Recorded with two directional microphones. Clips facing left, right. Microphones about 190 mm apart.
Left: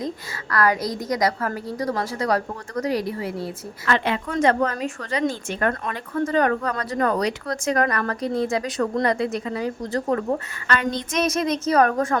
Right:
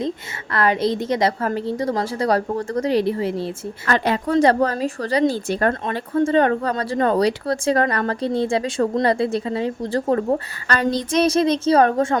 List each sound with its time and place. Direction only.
0.5 s a woman's voice: 25° right (ahead or behind)
3.8 s a woman's voice: 40° right (ahead or behind)